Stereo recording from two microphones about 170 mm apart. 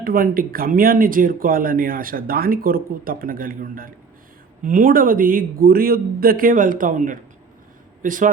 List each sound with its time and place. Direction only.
0.0 s speech: 55° right (ahead or behind)